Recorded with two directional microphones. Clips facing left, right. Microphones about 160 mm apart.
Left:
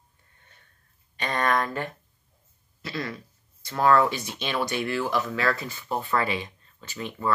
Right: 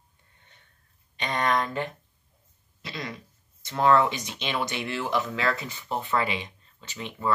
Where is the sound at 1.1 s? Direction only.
20° right (ahead or behind).